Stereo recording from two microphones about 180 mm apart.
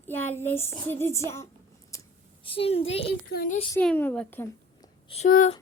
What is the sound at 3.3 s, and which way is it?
Speech, 50° left (ahead or behind).